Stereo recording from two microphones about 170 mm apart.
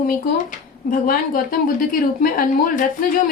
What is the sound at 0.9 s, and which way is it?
A woman's voice, 55° left (ahead or behind).